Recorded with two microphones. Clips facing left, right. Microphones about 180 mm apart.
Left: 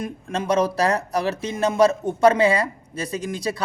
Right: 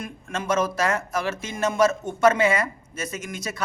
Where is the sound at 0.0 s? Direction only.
35° left (ahead or behind).